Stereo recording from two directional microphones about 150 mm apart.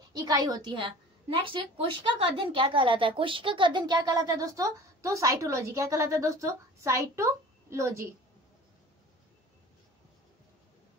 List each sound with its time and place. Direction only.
0.1 s a woman's voice: 25° right (ahead or behind)